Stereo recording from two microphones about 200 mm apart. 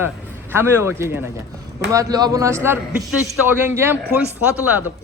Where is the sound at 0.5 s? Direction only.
10° right (ahead or behind).